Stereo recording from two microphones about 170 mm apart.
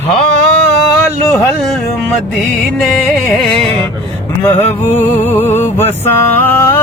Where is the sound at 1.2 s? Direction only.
15° left (ahead or behind).